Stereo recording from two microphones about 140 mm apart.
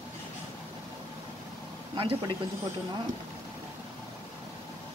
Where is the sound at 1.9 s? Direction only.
35° right (ahead or behind).